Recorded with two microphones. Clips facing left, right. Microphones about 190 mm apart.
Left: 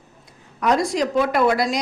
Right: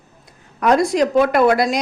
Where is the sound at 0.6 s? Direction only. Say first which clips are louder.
Right 4 dB; 55° right (ahead or behind).